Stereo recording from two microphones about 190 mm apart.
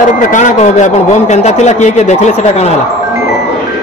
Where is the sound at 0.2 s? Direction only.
40° left (ahead or behind).